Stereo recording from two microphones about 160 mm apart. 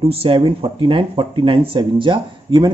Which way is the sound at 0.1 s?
35° right (ahead or behind).